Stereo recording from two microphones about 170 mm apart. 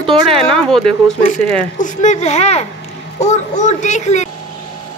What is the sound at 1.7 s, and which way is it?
A child's voice, 45° left (ahead or behind).